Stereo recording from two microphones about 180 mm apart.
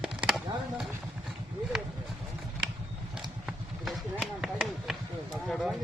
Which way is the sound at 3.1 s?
5° right (ahead or behind).